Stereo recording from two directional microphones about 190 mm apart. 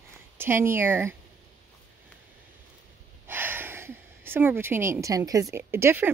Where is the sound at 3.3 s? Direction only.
10° right (ahead or behind).